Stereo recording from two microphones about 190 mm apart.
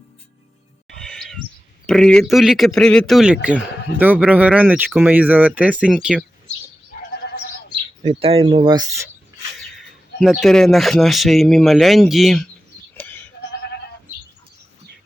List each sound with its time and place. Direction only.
0.9 s bird: 5° left (ahead or behind)
1.9 s a man's voice: 5° left (ahead or behind)
8.0 s speech: 30° right (ahead or behind)
10.2 s speech: centre (ahead or behind)
13.0 s sheep: 10° left (ahead or behind)
13.5 s goat: 60° left (ahead or behind)